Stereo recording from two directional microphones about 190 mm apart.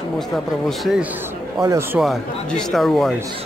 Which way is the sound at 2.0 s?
Centre (ahead or behind).